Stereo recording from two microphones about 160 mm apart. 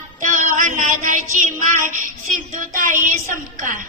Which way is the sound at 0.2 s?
55° right (ahead or behind).